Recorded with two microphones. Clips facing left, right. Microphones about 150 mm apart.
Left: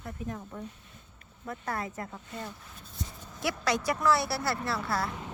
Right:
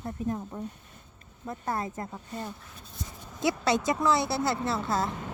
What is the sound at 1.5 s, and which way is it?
Speech, 25° right (ahead or behind).